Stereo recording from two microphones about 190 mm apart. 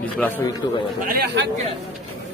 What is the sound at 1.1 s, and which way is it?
Speech, 60° right (ahead or behind).